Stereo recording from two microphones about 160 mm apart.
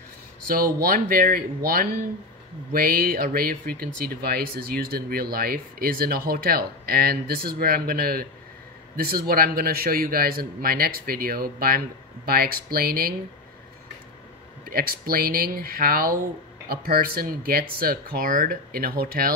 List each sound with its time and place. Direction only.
0.8 s speech: 65° right (ahead or behind)
14.7 s speech: 65° right (ahead or behind)